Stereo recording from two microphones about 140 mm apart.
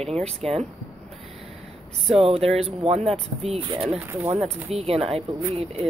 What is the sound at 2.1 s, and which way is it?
Speech, 45° right (ahead or behind).